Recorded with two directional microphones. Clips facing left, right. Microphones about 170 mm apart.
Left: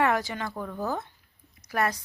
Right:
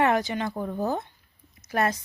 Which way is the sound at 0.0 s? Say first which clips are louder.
Right 3 dB; 20° right (ahead or behind).